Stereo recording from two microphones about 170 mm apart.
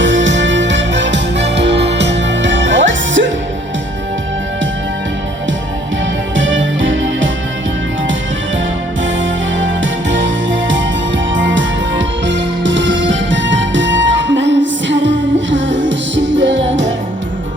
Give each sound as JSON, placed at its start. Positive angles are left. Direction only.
{"t": 0.0, "sound": "music", "side_deg": -90}
{"t": 6.3, "sound": "music", "side_deg": -90}
{"t": 9.2, "sound": "music", "side_deg": -90}